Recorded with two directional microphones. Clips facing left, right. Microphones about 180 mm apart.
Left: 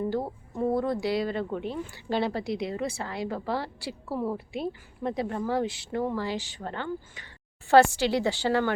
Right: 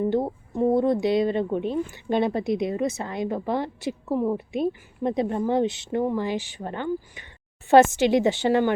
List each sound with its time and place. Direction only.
0.0 s speech: 20° right (ahead or behind)